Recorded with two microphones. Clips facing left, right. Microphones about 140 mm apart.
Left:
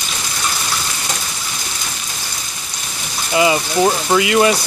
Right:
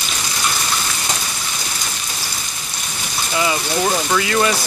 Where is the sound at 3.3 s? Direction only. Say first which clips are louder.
Left 5 dB; 15° left (ahead or behind).